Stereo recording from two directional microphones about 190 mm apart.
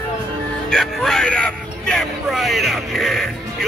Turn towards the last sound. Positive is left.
turn(degrees=0)  # may be behind; listen again after turning